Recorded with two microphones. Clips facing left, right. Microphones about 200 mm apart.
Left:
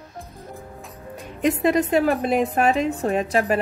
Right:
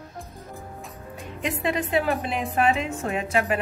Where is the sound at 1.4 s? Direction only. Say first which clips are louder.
Left 7 dB; 45° left (ahead or behind).